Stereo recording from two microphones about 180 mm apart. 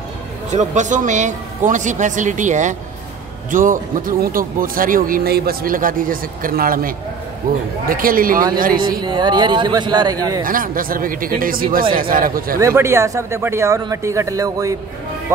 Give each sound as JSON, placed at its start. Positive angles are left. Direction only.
{"t": 0.5, "sound": "a man's voice", "side_deg": -40}
{"t": 9.0, "sound": "a man's voice", "side_deg": -25}
{"t": 10.4, "sound": "a man's voice", "side_deg": -50}
{"t": 12.5, "sound": "speech", "side_deg": -15}